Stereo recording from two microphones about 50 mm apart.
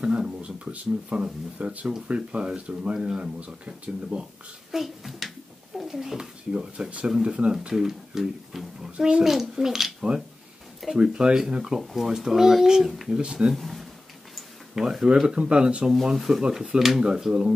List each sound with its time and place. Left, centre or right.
0.0 s speech: centre
4.6 s speech: centre
6.5 s speech: centre
7.6 s speech: centre
11.0 s speech: centre
13.5 s speech: centre
15.2 s speech: centre
15.9 s speech: centre